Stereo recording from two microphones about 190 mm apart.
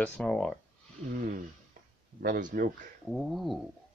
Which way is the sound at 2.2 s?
45° right (ahead or behind).